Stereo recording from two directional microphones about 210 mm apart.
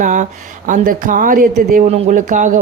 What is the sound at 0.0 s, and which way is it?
Speech, 35° right (ahead or behind).